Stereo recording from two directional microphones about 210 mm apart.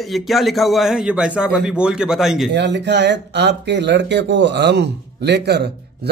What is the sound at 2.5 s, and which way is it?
Speech, 55° right (ahead or behind).